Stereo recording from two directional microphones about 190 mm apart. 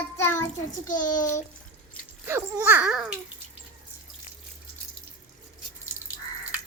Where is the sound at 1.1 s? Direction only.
20° left (ahead or behind).